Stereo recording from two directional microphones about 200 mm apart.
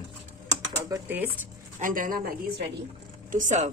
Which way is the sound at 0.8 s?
15° right (ahead or behind).